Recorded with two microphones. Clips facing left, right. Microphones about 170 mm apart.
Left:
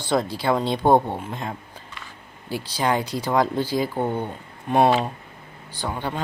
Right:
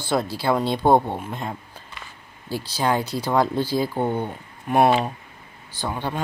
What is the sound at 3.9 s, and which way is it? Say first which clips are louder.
Speech: right 1 dB; 10° right (ahead or behind).